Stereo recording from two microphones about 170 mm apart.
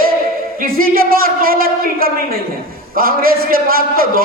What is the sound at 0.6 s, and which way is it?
A man's voice, 60° right (ahead or behind).